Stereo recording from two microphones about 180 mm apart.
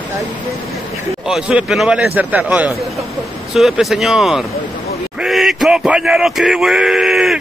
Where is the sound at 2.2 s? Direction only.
10° right (ahead or behind).